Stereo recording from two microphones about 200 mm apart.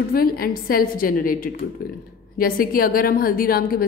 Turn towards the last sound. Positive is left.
turn(degrees=50)  # may be behind; listen again after turning